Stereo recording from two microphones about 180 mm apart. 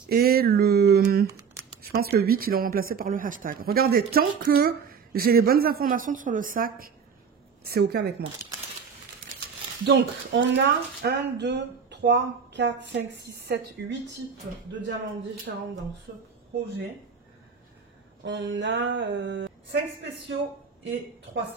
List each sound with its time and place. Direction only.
0.1 s a sound: 60° right (ahead or behind)
1.8 s speech: 60° right (ahead or behind)
7.6 s speech: 60° right (ahead or behind)
9.8 s speech: 75° right (ahead or behind)
15.5 s speech: 65° right (ahead or behind)
18.2 s speech: 90° right; by 19.8 s 75° right (ahead or behind)